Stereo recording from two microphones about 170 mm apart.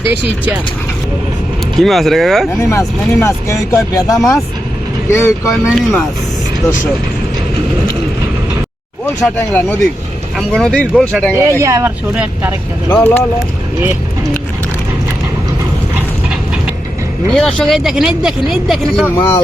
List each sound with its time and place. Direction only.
1.8 s speech: centre (ahead or behind)
2.6 s speech: 15° left (ahead or behind)
5.5 s speech: centre (ahead or behind)
9.2 s speech: 10° left (ahead or behind)
11.3 s speech: 15° right (ahead or behind)
12.9 s speech: 10° left (ahead or behind)
17.3 s speech: 5° left (ahead or behind)
19.0 s speech: 10° left (ahead or behind)